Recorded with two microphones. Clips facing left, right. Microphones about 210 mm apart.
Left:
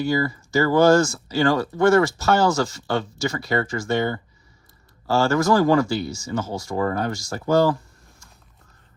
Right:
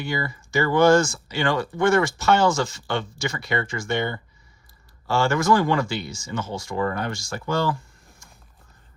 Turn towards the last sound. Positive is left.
turn(degrees=40)  # may be behind; listen again after turning